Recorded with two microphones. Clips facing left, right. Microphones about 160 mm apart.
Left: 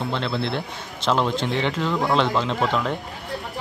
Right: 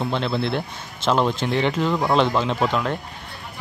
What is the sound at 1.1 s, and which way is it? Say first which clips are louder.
Speech: right 1 dB; 10° right (ahead or behind).